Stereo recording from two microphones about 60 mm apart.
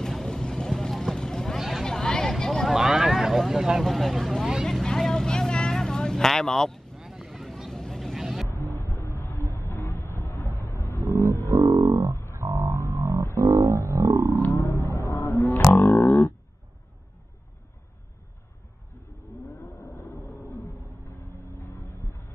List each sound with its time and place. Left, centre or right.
0.0 s vehicle: centre
1.6 s a sound: centre
1.9 s vehicle: centre
2.7 s vehicle: centre
7.0 s vehicle: centre
8.5 s a sound: left
10.6 s roaring cats: left
11.1 s music: right
11.4 s didgeridoo: right
12.4 s a sound: right
14.5 s roaring cats: left
20.0 s a sound: left